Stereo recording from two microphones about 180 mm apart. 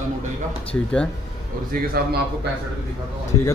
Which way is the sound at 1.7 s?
55° right (ahead or behind).